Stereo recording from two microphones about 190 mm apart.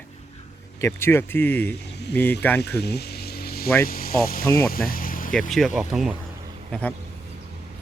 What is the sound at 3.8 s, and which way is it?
Speech, 50° left (ahead or behind).